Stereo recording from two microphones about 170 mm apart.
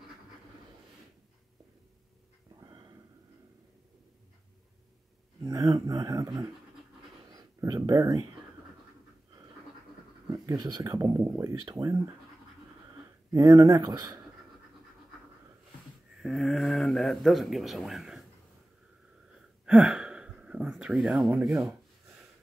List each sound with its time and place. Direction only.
5.4 s speech: 20° right (ahead or behind)
10.3 s speech: 20° right (ahead or behind)
13.3 s speech: 20° right (ahead or behind)
16.2 s speech: centre (ahead or behind)
19.6 s gasp: 5° right (ahead or behind)